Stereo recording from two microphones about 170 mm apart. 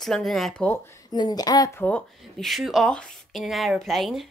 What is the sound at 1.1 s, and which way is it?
Speech, 25° left (ahead or behind).